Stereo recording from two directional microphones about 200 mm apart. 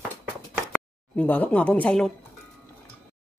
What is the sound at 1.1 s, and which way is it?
Speech, 10° left (ahead or behind).